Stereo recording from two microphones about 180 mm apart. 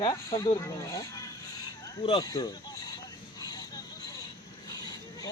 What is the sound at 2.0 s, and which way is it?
Speech, 30° left (ahead or behind).